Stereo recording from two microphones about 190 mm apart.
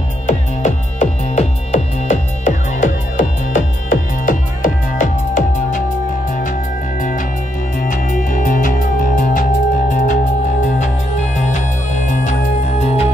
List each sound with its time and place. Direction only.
0.3 s music: 40° left (ahead or behind)
7.0 s music: 45° left (ahead or behind)
12.1 s music: 40° left (ahead or behind)